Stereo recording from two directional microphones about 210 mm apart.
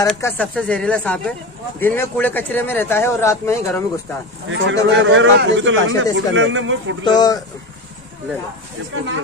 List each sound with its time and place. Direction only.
0.0 s speech: 5° left (ahead or behind)
4.5 s a man's voice: 65° right (ahead or behind)
7.1 s a man's voice: 20° left (ahead or behind)